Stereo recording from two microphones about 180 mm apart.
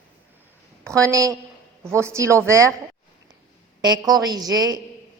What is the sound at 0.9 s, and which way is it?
A woman's voice, 15° right (ahead or behind).